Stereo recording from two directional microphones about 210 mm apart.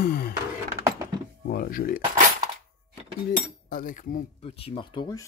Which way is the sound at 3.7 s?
40° left (ahead or behind).